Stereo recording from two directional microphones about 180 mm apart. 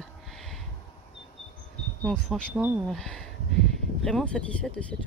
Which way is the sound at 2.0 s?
5° left (ahead or behind).